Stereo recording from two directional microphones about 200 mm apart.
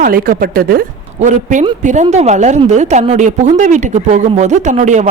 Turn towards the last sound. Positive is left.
turn(degrees=-35)  # may be behind; listen again after turning